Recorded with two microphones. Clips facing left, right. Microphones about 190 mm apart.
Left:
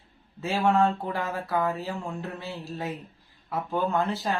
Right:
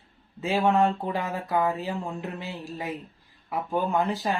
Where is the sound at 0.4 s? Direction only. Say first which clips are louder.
Right 1 dB; 15° right (ahead or behind).